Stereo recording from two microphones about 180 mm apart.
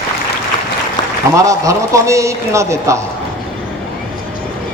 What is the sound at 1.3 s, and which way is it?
A man's voice, 15° right (ahead or behind).